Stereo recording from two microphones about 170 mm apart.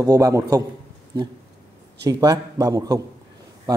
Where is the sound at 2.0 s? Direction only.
20° right (ahead or behind).